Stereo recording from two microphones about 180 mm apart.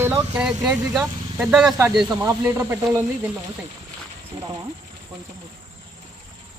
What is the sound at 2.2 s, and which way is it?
Speech, 15° right (ahead or behind).